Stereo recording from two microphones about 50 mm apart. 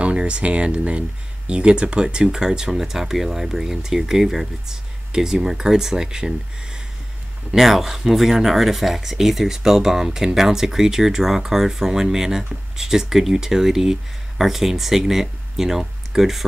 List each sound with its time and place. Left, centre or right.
0.0 s speech: right; by 16.4 s centre